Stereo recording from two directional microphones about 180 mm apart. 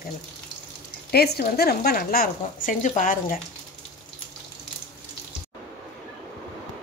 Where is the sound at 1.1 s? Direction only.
60° left (ahead or behind).